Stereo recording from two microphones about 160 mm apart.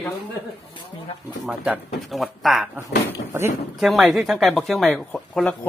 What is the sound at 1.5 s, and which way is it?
Speech, 5° right (ahead or behind).